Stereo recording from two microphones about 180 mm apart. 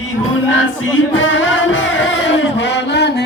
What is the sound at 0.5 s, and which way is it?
Music, 90° left.